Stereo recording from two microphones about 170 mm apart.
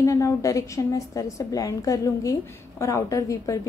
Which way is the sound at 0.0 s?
20° left (ahead or behind).